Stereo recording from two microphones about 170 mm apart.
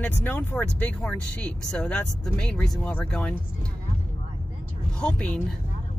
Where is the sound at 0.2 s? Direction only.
10° left (ahead or behind).